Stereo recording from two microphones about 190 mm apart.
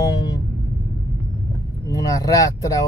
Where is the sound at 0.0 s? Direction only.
20° left (ahead or behind).